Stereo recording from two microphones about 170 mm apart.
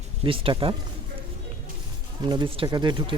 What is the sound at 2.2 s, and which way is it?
Speech, 25° right (ahead or behind).